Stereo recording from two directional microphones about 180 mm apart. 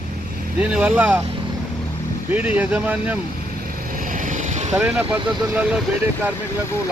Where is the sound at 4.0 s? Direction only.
45° right (ahead or behind).